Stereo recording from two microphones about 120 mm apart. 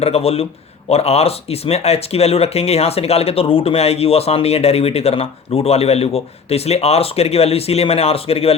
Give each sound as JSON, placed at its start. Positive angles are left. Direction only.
{"t": 0.0, "sound": "speech", "side_deg": 55}